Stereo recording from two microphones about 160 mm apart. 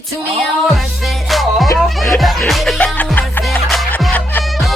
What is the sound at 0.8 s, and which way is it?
Music, centre (ahead or behind).